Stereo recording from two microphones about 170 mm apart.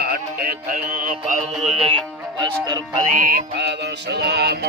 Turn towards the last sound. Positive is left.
turn(degrees=-70)  # may be behind; listen again after turning